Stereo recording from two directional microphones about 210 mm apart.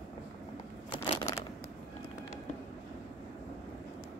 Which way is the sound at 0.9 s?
25° left (ahead or behind).